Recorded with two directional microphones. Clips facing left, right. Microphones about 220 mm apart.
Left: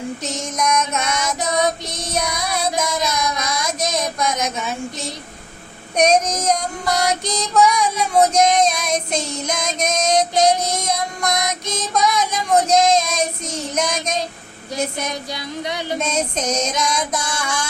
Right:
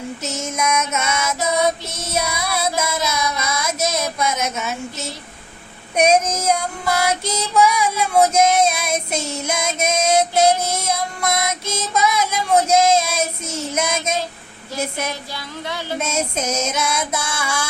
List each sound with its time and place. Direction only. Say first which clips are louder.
0.2 s female singing: even; 5° right (ahead or behind)
6.0 s child singing: even; 5° right (ahead or behind)
15.3 s a sound: left 3 dB; 20° left (ahead or behind)
16.0 s child singing: right 1 dB; 10° right (ahead or behind)